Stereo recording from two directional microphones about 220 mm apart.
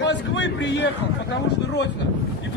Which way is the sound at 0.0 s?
55° left (ahead or behind).